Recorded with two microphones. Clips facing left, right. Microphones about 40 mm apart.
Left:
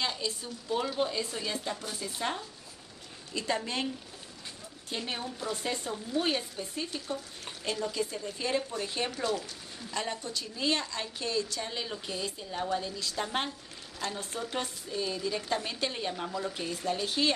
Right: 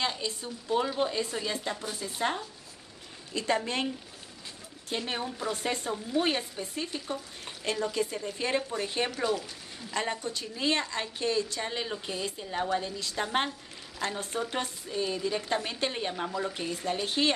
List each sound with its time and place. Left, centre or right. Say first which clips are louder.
0.7 s speech: right 2 dB; centre
1.0 s a woman's voice: right 2 dB; right
3.3 s a woman's voice: right 3 dB; right
7.7 s a woman's voice: right 3 dB; right